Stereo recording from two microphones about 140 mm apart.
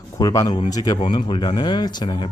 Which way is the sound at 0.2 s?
25° left (ahead or behind).